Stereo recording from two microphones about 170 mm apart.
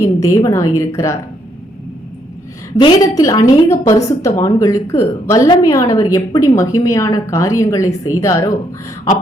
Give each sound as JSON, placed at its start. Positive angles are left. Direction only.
{"t": 0.2, "sound": "a woman's voice", "side_deg": 20}
{"t": 2.7, "sound": "a woman's voice", "side_deg": 25}